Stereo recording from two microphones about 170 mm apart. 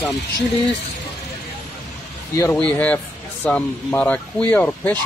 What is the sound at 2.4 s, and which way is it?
Speech, 10° left (ahead or behind).